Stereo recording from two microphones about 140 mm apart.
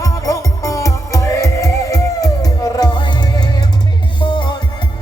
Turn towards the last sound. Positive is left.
turn(degrees=35)  # may be behind; listen again after turning